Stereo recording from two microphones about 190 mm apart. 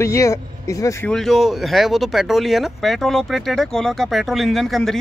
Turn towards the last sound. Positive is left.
turn(degrees=0)  # may be behind; listen again after turning